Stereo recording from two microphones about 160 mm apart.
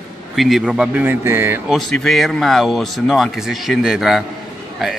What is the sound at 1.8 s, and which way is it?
Speech, centre (ahead or behind).